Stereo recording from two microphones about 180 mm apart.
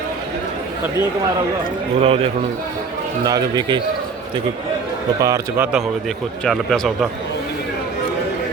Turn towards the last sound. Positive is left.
turn(degrees=0)  # may be behind; listen again after turning